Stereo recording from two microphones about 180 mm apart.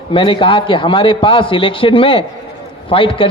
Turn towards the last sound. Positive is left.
turn(degrees=30)  # may be behind; listen again after turning